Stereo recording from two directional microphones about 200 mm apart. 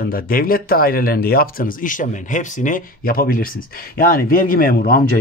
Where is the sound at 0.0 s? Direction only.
45° left (ahead or behind).